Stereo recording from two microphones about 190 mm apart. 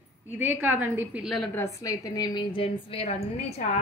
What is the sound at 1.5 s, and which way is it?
A woman's voice, 15° left (ahead or behind).